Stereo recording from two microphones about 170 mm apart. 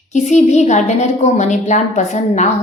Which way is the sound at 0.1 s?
45° left (ahead or behind).